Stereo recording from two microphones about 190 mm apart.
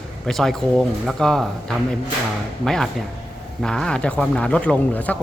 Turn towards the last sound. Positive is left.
turn(degrees=5)  # may be behind; listen again after turning